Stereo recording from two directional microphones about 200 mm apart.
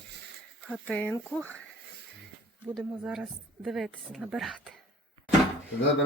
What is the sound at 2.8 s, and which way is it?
Speech, 5° right (ahead or behind).